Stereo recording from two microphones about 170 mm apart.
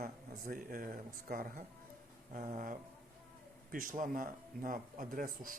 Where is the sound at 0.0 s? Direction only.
55° right (ahead or behind).